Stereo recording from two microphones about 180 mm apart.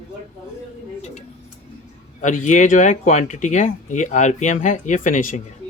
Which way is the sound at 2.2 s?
45° left (ahead or behind).